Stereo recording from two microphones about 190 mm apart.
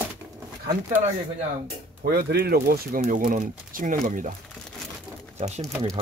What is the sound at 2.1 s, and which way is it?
Speech, 60° right (ahead or behind).